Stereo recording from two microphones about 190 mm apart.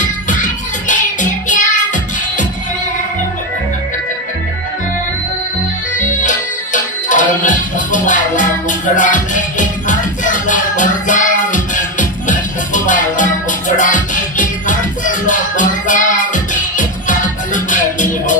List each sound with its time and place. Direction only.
0.0 s music: 40° left (ahead or behind)
5.9 s music: 40° left (ahead or behind)